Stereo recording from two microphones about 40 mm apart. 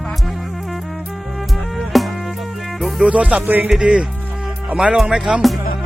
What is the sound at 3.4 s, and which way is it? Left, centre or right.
Music, right.